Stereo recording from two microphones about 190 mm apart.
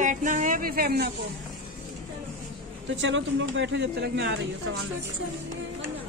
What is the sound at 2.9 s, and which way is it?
Speech, 80° right.